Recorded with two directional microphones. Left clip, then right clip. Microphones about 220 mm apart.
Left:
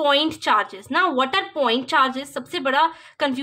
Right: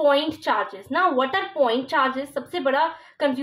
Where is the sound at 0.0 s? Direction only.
25° left (ahead or behind).